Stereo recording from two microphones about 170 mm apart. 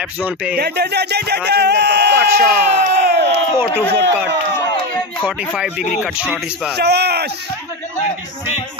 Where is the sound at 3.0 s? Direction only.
80° right.